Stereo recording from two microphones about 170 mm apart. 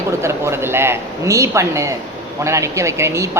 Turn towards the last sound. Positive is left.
turn(degrees=-15)  # may be behind; listen again after turning